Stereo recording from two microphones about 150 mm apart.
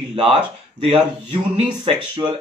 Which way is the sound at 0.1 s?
35° right (ahead or behind).